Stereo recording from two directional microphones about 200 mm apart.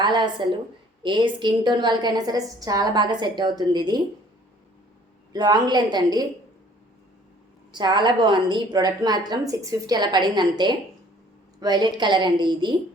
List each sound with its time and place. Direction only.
0.0 s a woman's voice: 20° right (ahead or behind)
5.3 s a woman's voice: 20° right (ahead or behind)
7.7 s a woman's voice: 20° right (ahead or behind)